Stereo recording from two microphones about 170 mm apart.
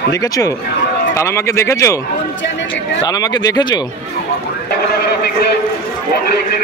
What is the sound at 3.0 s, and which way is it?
Speech, 25° left (ahead or behind).